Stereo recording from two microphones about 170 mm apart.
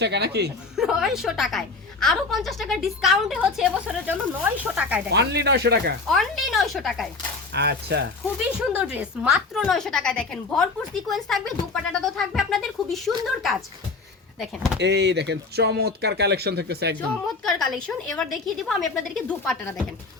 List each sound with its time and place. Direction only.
0.0 s speech: 80° right
0.8 s a woman's voice: 5° right (ahead or behind)
5.1 s speech: 80° right
6.1 s a woman's voice: centre (ahead or behind)
7.5 s speech: 80° right
8.5 s a woman's voice: 5° right (ahead or behind)
14.3 s a woman's voice: centre (ahead or behind)
14.8 s speech: 85° right
17.4 s a woman's voice: centre (ahead or behind)